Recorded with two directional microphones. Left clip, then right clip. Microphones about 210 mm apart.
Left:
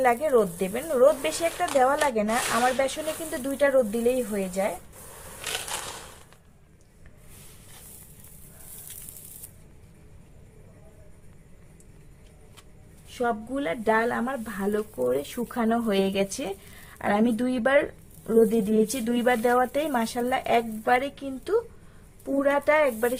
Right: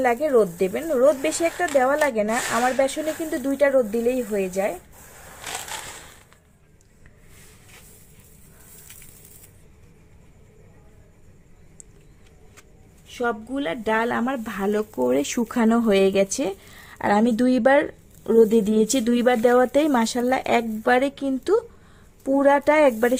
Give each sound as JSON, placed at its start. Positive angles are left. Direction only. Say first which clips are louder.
{"t": 0.0, "sound": "speech", "louder": "right 2 dB", "side_deg": -45}
{"t": 13.1, "sound": "speech", "louder": "right 2 dB", "side_deg": -45}